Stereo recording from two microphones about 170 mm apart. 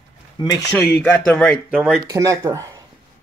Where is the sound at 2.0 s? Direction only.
20° right (ahead or behind).